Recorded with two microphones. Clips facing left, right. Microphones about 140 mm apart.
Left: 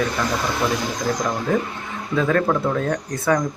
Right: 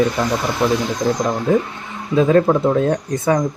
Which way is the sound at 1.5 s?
20° right (ahead or behind).